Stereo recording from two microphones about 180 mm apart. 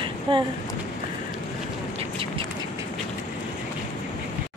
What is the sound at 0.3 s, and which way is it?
Speech, 30° right (ahead or behind).